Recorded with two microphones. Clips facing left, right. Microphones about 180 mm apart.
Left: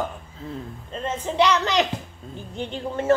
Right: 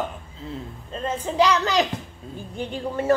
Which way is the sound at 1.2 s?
35° right (ahead or behind).